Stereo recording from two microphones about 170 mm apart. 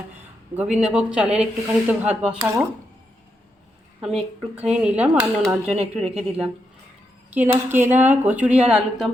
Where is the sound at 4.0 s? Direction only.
5° right (ahead or behind).